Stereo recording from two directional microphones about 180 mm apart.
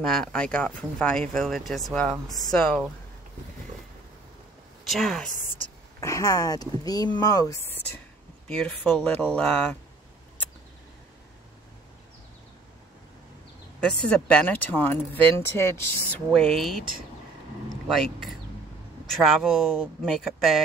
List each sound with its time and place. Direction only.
0.0 s speech: centre (ahead or behind)
4.8 s speech: centre (ahead or behind)
5.9 s speech: 20° left (ahead or behind)
8.5 s speech: 5° left (ahead or behind)
13.8 s speech: 5° left (ahead or behind)
16.3 s speech: centre (ahead or behind)
19.2 s speech: centre (ahead or behind)